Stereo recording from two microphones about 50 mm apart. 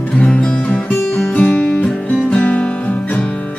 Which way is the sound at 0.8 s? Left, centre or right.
Left.